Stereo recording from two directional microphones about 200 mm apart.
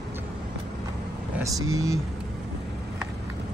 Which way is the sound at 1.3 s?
15° right (ahead or behind).